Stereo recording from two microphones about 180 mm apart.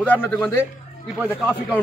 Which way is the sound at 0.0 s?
10° left (ahead or behind).